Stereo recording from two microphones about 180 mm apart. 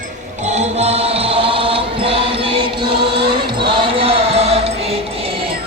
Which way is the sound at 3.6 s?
30° right (ahead or behind).